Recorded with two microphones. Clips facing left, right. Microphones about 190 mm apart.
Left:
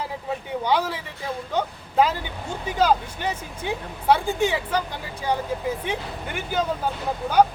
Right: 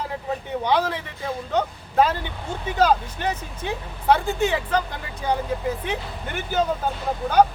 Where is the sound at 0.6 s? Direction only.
10° left (ahead or behind).